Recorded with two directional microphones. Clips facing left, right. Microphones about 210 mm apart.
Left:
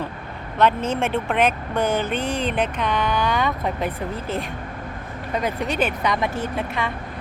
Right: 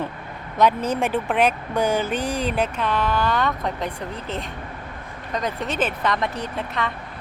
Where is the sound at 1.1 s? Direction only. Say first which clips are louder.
Even; 15° right (ahead or behind); by 3.8 s 5° left (ahead or behind).